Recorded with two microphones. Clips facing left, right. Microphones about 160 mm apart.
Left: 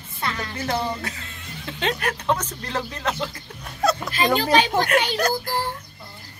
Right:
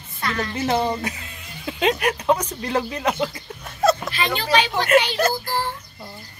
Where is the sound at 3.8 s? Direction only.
Centre (ahead or behind).